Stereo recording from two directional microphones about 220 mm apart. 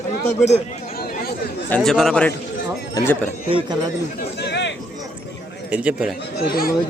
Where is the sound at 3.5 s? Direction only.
25° right (ahead or behind).